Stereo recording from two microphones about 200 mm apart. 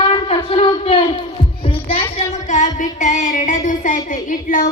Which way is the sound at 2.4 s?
35° left (ahead or behind).